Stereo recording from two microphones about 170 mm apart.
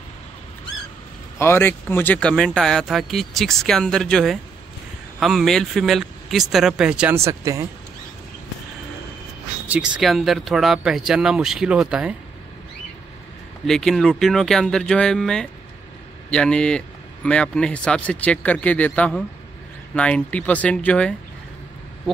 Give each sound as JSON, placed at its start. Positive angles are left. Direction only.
{"t": 1.4, "sound": "speech", "side_deg": 15}
{"t": 7.2, "sound": "speech", "side_deg": -15}
{"t": 9.7, "sound": "speech", "side_deg": -5}
{"t": 13.7, "sound": "speech", "side_deg": 0}